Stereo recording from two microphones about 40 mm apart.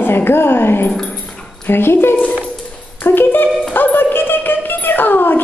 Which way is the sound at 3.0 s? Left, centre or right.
Left.